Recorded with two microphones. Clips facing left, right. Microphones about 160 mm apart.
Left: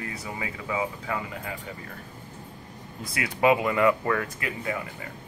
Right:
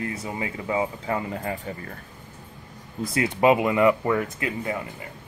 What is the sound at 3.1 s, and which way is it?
Speech, 30° right (ahead or behind).